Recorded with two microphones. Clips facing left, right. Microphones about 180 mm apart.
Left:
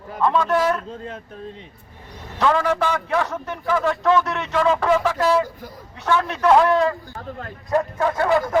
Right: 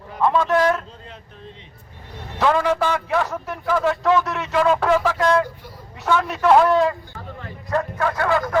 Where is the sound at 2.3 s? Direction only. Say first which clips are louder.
Right 1 dB; 5° right (ahead or behind).